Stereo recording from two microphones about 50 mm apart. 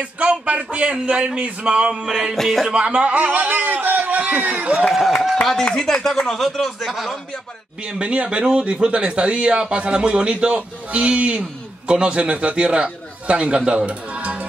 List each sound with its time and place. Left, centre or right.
0.0 s speech: right
2.0 s a sound: centre
2.3 s speech: centre
2.7 s a man's voice: right
4.8 s speech: centre
6.2 s speech: centre
7.8 s a man's voice: right